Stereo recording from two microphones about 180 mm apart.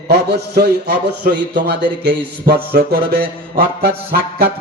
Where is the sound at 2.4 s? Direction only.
60° right (ahead or behind).